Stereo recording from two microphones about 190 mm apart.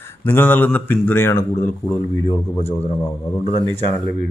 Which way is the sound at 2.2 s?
30° left (ahead or behind).